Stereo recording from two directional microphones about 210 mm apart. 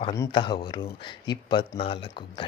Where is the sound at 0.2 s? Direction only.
25° left (ahead or behind).